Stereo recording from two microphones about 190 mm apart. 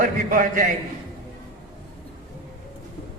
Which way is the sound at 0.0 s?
45° right (ahead or behind).